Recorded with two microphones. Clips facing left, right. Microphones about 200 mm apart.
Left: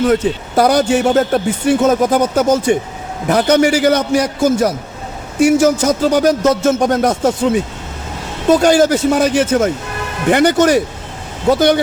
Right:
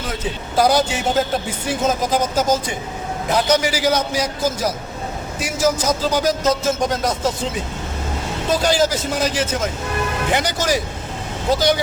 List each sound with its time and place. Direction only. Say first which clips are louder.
0.1 s a man's voice: left 10 dB; 60° left (ahead or behind)
8.5 s a man's voice: left 7 dB; 55° left (ahead or behind)